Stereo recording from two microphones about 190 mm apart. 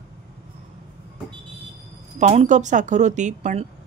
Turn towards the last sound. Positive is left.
turn(degrees=-40)  # may be behind; listen again after turning